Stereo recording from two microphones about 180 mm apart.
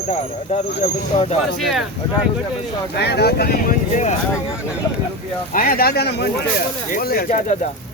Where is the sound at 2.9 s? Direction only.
65° left (ahead or behind); by 4.1 s 45° left (ahead or behind).